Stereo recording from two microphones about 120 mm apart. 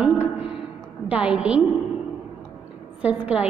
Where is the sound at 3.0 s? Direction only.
10° right (ahead or behind).